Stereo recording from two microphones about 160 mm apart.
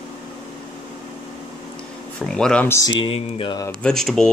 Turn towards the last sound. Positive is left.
turn(degrees=0)  # may be behind; listen again after turning